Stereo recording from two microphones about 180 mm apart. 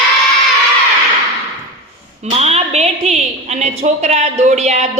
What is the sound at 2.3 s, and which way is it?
A woman's voice, 35° right (ahead or behind).